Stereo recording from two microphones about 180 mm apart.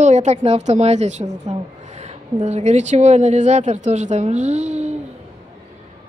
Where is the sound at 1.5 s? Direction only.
40° right (ahead or behind).